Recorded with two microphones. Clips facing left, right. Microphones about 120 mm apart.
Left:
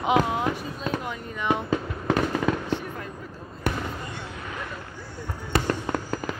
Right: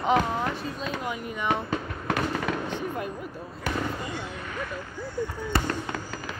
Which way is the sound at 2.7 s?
15° right (ahead or behind).